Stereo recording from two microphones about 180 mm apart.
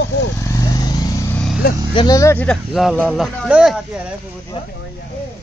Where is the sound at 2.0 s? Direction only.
20° left (ahead or behind).